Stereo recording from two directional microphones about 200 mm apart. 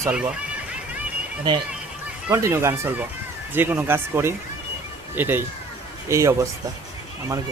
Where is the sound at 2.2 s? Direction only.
15° right (ahead or behind).